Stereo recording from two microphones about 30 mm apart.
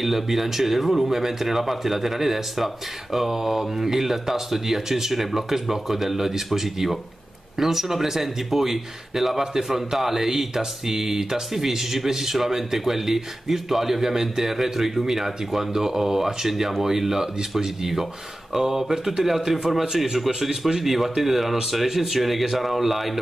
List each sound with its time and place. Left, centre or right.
0.0 s speech: centre